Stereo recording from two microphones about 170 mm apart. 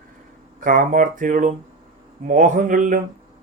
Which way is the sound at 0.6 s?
50° right (ahead or behind).